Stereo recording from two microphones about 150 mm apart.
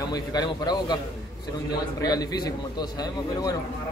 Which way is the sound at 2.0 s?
25° left (ahead or behind).